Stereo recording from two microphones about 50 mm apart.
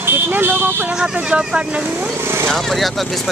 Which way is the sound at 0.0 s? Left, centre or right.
Right.